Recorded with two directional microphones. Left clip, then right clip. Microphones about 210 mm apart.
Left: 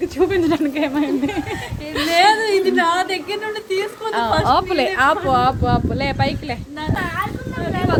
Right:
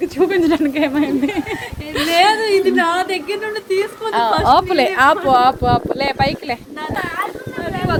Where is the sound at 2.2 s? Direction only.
15° left (ahead or behind).